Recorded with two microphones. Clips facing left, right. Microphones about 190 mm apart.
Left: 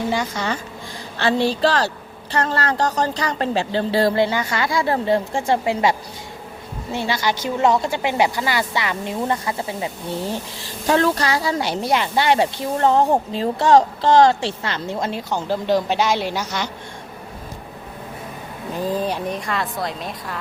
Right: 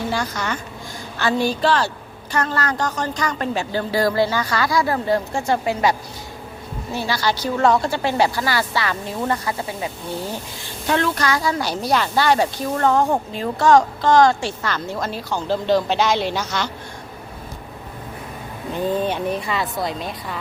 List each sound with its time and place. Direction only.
0.1 s speech: 20° left (ahead or behind)
1.2 s a woman's voice: 30° left (ahead or behind)
10.8 s speech: 35° left (ahead or behind); by 16.6 s 10° left (ahead or behind)
18.8 s a woman's voice: centre (ahead or behind)